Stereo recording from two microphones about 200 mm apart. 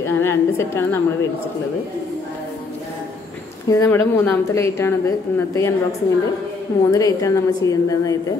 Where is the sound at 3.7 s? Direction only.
10° left (ahead or behind).